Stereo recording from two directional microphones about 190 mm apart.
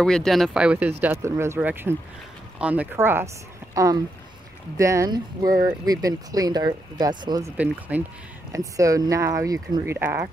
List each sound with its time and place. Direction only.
0.0 s speech: 5° left (ahead or behind); by 7.5 s 20° right (ahead or behind)
7.5 s speech: 5° right (ahead or behind)